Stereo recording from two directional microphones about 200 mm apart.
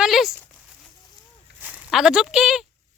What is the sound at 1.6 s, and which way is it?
Speech, 5° right (ahead or behind).